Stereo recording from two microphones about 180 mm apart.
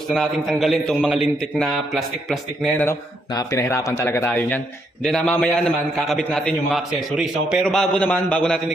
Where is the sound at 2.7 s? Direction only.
10° left (ahead or behind).